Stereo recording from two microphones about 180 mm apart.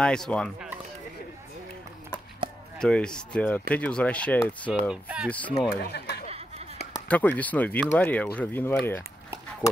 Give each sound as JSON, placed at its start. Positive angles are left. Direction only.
{"t": 0.0, "sound": "speech", "side_deg": 5}
{"t": 2.8, "sound": "speech", "side_deg": 5}
{"t": 4.8, "sound": "speech", "side_deg": -5}
{"t": 5.7, "sound": "speech", "side_deg": 65}
{"t": 7.1, "sound": "speech", "side_deg": 10}